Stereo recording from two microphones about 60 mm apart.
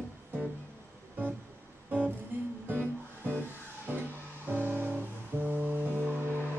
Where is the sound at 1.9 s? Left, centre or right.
Right.